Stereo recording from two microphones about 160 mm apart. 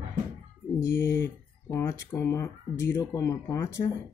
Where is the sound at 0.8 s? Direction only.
15° left (ahead or behind).